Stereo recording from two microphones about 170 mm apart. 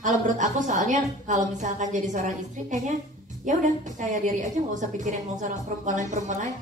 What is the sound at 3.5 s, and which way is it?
A woman's voice, 45° right (ahead or behind).